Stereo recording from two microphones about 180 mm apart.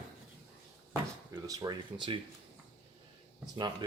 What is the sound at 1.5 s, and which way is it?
Speech, 25° right (ahead or behind).